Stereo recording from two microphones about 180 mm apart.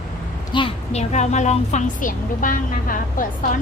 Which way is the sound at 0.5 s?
30° left (ahead or behind).